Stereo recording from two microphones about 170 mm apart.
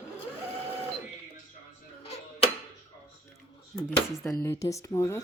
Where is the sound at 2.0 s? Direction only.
35° left (ahead or behind).